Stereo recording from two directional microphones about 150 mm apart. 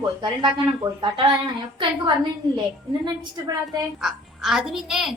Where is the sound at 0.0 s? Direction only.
30° right (ahead or behind).